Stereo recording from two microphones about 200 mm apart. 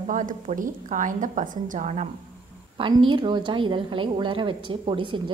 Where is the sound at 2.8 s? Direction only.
25° right (ahead or behind).